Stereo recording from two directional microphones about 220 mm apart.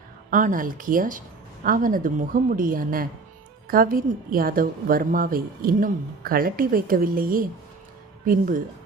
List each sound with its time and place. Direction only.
0.3 s a woman's voice: 35° right (ahead or behind)